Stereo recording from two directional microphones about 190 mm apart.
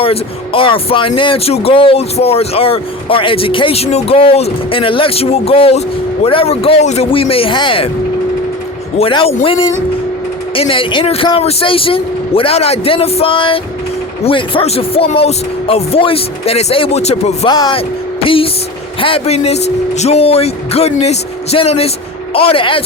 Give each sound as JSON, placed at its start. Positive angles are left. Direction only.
{"t": 0.0, "sound": "speech", "side_deg": 30}
{"t": 9.0, "sound": "speech", "side_deg": 30}
{"t": 17.4, "sound": "speech", "side_deg": 20}